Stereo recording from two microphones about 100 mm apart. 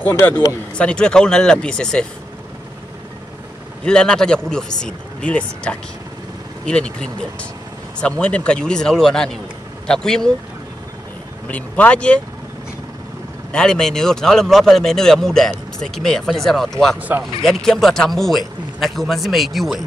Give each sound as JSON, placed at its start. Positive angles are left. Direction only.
{"t": 0.1, "sound": "speech", "side_deg": 25}
{"t": 0.7, "sound": "speech", "side_deg": 10}
{"t": 3.8, "sound": "speech", "side_deg": 10}
{"t": 11.4, "sound": "speech", "side_deg": 15}
{"t": 13.5, "sound": "speech", "side_deg": 5}